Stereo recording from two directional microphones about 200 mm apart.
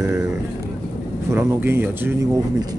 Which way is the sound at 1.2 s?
10° right (ahead or behind).